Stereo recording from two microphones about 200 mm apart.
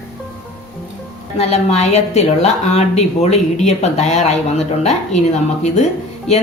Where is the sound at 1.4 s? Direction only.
30° left (ahead or behind).